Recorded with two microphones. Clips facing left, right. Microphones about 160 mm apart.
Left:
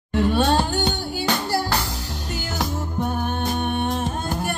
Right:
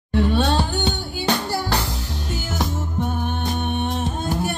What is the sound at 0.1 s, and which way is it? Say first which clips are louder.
Music: right 1 dB; 10° left (ahead or behind).